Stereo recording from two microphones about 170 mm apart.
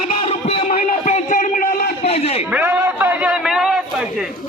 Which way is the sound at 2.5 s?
10° right (ahead or behind).